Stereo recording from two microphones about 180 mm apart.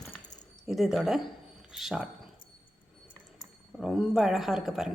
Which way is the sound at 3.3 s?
Centre (ahead or behind).